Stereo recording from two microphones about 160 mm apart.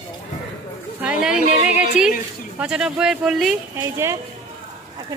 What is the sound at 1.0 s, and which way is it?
Speech, 10° right (ahead or behind).